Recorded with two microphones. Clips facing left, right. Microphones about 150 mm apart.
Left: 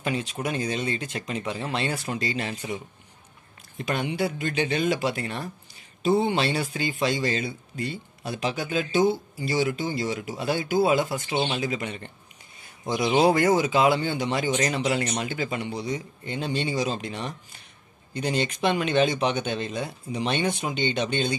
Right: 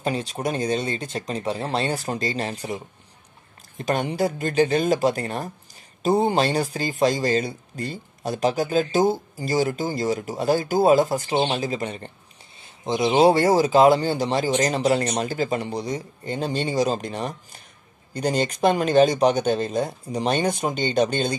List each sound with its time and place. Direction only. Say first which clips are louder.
0.0 s speech: right 3 dB; 35° right (ahead or behind)
12.6 s speech: right 3 dB; 25° right (ahead or behind); by 21.4 s 40° right (ahead or behind)